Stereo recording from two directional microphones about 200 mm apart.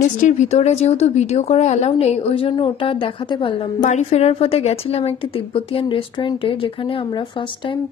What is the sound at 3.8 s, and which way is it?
A woman's voice, 35° left (ahead or behind).